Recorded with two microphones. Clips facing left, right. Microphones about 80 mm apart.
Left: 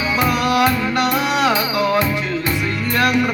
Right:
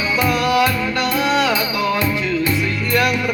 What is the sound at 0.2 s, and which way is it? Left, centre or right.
Music, left.